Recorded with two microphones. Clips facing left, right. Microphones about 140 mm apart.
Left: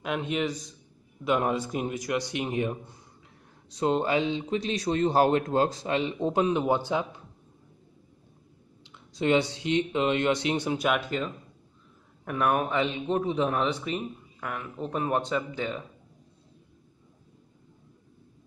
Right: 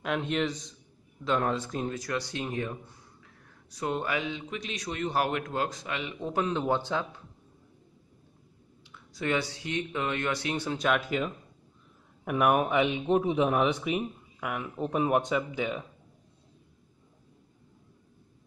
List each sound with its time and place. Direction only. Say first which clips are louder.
0.0 s a man's voice: even; 5° left (ahead or behind)
8.8 s speech: left 6 dB; 20° left (ahead or behind)
10.9 s a man's voice: right 4 dB; 5° right (ahead or behind)